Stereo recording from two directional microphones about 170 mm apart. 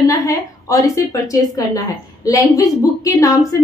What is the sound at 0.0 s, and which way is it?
A woman's voice, 20° left (ahead or behind).